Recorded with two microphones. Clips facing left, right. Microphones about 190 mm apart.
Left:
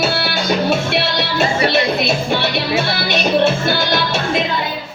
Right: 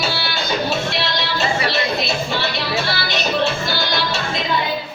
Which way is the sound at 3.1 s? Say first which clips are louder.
Left 7 dB; 55° left (ahead or behind).